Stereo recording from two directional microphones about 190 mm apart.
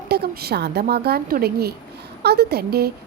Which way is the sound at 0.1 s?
55° right (ahead or behind).